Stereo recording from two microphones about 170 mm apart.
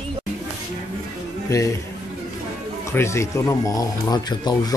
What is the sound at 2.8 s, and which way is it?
Speech, 15° left (ahead or behind).